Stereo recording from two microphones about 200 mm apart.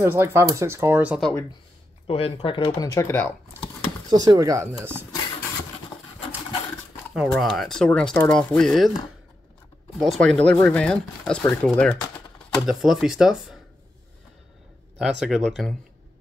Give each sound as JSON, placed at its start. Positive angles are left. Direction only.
{"t": 0.0, "sound": "speech", "side_deg": -15}
{"t": 2.0, "sound": "speech", "side_deg": 30}
{"t": 4.1, "sound": "speech", "side_deg": -20}
{"t": 7.2, "sound": "speech", "side_deg": 0}
{"t": 9.9, "sound": "speech", "side_deg": 0}
{"t": 15.0, "sound": "speech", "side_deg": 0}